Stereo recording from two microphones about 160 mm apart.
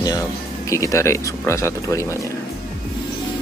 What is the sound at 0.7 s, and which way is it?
Speech, 20° left (ahead or behind).